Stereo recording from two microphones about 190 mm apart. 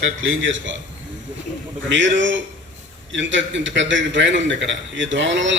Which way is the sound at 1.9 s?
75° right (ahead or behind).